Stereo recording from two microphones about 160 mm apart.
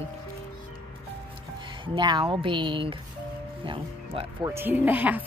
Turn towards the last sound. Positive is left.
turn(degrees=-10)  # may be behind; listen again after turning